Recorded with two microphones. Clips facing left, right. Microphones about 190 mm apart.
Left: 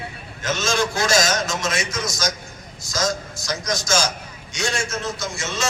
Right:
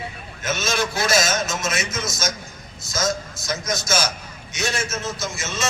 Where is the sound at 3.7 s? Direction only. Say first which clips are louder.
Left 2 dB; 5° right (ahead or behind).